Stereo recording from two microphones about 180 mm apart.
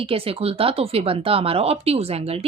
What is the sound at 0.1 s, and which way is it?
Speech, 30° right (ahead or behind).